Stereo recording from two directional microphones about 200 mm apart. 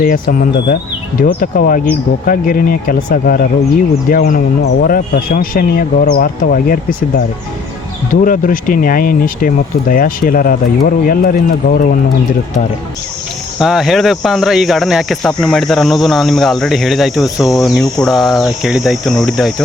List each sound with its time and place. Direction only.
0.0 s speech: 45° left (ahead or behind)
8.1 s speech: 45° left (ahead or behind)
13.6 s speech: centre (ahead or behind)